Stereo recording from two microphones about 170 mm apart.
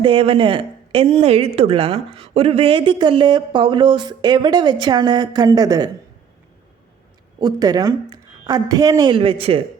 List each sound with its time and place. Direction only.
0.0 s speech: 35° right (ahead or behind)
7.3 s speech: 25° right (ahead or behind)